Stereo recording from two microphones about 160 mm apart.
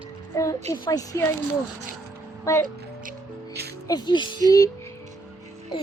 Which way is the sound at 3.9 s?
25° left (ahead or behind).